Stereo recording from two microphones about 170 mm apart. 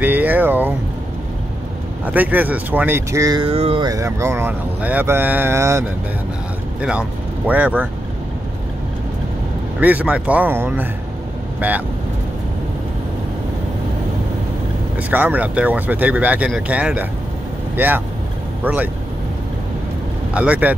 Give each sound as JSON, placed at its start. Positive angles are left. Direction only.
{"t": 0.0, "sound": "vehicle", "side_deg": -10}
{"t": 2.1, "sound": "speech", "side_deg": -10}
{"t": 3.4, "sound": "speech", "side_deg": -35}
{"t": 3.8, "sound": "speech", "side_deg": -20}
{"t": 6.8, "sound": "speech", "side_deg": -5}
{"t": 9.8, "sound": "speech", "side_deg": -10}
{"t": 15.0, "sound": "speech", "side_deg": -10}
{"t": 20.3, "sound": "speech", "side_deg": -10}